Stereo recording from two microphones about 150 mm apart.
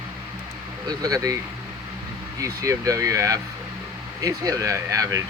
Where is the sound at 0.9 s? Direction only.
25° right (ahead or behind).